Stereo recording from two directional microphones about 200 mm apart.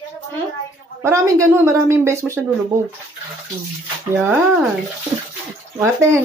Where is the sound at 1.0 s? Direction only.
10° right (ahead or behind).